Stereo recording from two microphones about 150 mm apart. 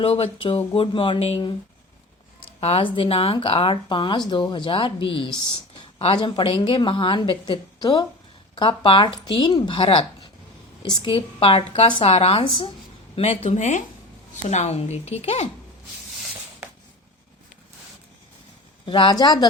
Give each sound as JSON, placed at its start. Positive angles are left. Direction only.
{"t": 0.0, "sound": "a woman's voice", "side_deg": 40}
{"t": 2.6, "sound": "a woman's voice", "side_deg": 40}
{"t": 18.9, "sound": "speech", "side_deg": 35}